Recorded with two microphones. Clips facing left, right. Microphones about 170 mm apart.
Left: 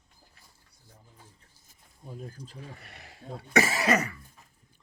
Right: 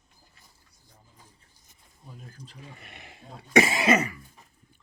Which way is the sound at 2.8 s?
20° right (ahead or behind).